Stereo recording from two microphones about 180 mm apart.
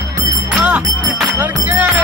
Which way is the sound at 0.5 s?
10° right (ahead or behind).